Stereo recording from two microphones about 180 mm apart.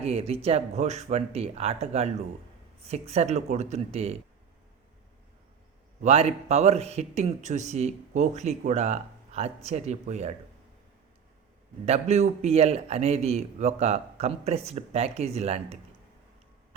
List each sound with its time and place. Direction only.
0.0 s a man's voice: 35° right (ahead or behind)
6.0 s a man's voice: 35° right (ahead or behind)
11.9 s a man's voice: 40° right (ahead or behind)